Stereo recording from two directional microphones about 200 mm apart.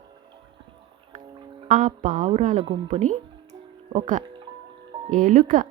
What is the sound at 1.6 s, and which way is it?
Speech, 40° right (ahead or behind).